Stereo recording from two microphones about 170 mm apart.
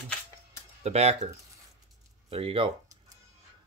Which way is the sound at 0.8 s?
40° right (ahead or behind).